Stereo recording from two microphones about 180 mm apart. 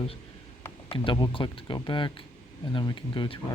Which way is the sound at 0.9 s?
30° left (ahead or behind).